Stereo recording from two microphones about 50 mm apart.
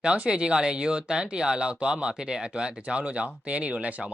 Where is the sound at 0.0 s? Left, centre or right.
Centre.